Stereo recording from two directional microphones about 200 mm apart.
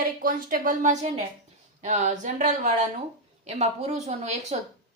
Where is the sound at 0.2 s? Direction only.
45° right (ahead or behind).